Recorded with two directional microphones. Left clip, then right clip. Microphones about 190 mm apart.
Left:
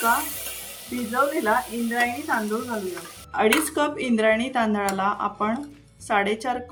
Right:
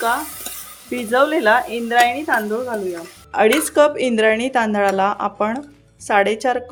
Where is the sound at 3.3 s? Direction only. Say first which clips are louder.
Right 7 dB; 40° right (ahead or behind).